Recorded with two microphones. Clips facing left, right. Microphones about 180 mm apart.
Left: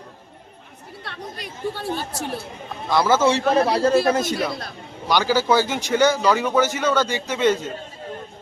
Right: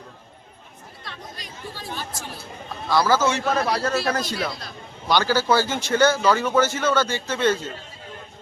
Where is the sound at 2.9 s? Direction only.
25° left (ahead or behind).